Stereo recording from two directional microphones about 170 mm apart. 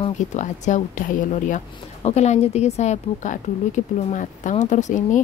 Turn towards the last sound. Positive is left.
turn(degrees=45)  # may be behind; listen again after turning